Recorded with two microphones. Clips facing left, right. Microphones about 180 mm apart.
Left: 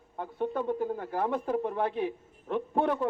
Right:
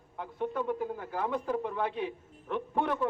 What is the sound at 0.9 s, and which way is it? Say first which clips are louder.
Speech: left 3 dB; 45° left (ahead or behind).